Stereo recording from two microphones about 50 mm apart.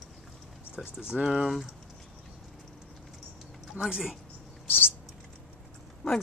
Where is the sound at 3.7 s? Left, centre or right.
Centre.